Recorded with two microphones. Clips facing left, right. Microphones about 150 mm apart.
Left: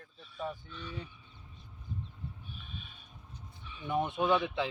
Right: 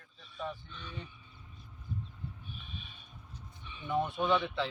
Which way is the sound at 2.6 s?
Centre (ahead or behind).